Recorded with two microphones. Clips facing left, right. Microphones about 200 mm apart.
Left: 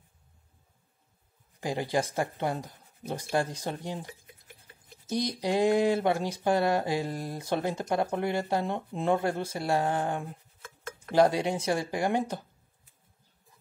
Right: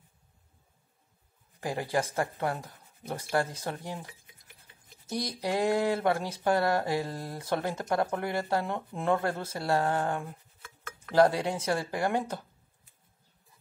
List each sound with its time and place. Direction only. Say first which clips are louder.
1.6 s speech: left 1 dB; 20° left (ahead or behind)
5.1 s speech: left 3 dB; 20° left (ahead or behind)